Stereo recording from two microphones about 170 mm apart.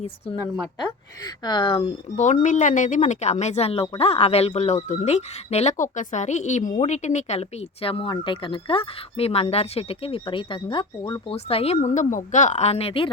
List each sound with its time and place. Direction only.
0.8 s speech: 25° left (ahead or behind)